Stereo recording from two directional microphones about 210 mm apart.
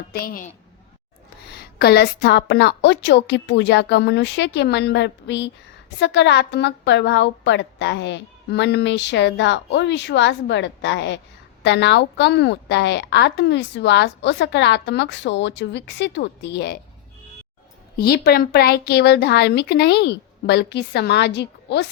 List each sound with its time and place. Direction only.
0.1 s speech: 45° left (ahead or behind)
1.5 s a woman's voice: 50° left (ahead or behind)
17.9 s speech: 50° left (ahead or behind)